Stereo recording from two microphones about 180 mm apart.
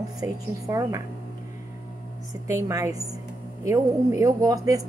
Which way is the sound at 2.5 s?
15° right (ahead or behind).